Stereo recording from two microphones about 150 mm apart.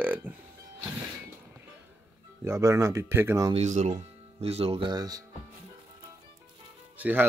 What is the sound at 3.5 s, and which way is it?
Speech, 50° right (ahead or behind).